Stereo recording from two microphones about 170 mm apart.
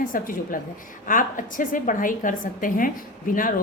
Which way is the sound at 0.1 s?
55° left (ahead or behind).